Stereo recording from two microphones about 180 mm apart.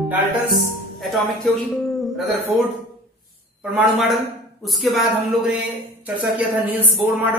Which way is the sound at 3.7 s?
Centre (ahead or behind).